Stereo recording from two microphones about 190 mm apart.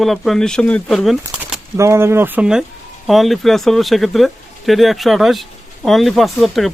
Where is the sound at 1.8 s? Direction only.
15° right (ahead or behind).